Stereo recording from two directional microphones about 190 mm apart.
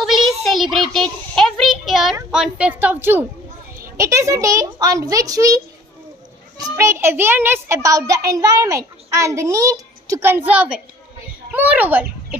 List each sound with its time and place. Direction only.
0.0 s child singing: centre (ahead or behind)
0.9 s a sound: centre (ahead or behind)
2.3 s a child's voice: 5° right (ahead or behind)
6.6 s a child's voice: 15° right (ahead or behind)